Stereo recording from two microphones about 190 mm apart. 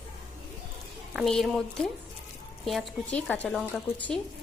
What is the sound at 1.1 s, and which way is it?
A woman's voice, centre (ahead or behind).